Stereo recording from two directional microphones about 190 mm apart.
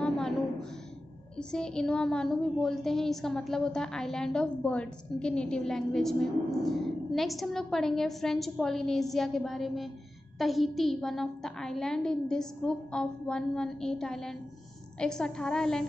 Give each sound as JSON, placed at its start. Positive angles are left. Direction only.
{"t": 1.5, "sound": "a woman's voice", "side_deg": 5}